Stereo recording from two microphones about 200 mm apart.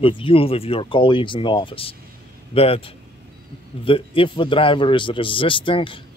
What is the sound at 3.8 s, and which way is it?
Speech, 25° left (ahead or behind).